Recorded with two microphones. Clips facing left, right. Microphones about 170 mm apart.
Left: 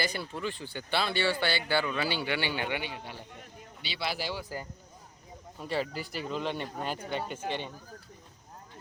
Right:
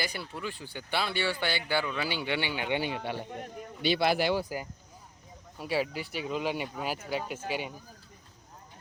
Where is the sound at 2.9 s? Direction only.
70° right (ahead or behind).